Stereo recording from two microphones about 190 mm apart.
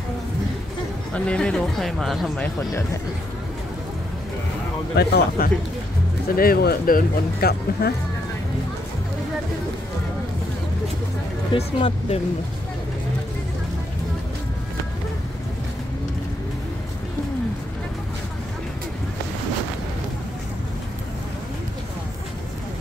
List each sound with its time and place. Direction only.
1.1 s speech: 5° left (ahead or behind)
4.9 s speech: 60° left (ahead or behind)
11.5 s speech: 30° left (ahead or behind)